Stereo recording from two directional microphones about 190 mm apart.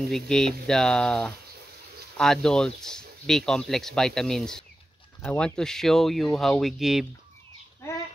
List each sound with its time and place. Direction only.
0.1 s speech: 5° left (ahead or behind)